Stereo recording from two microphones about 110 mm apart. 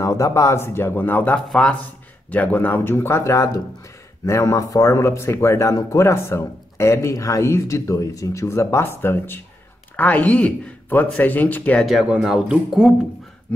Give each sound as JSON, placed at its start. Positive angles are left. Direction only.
{"t": 0.0, "sound": "speech", "side_deg": 30}
{"t": 11.8, "sound": "speech", "side_deg": -5}